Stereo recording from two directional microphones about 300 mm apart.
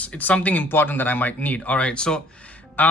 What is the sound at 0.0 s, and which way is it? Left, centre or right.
Speech, centre.